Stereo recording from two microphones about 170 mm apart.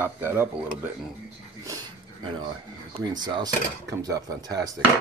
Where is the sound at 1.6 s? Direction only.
20° right (ahead or behind).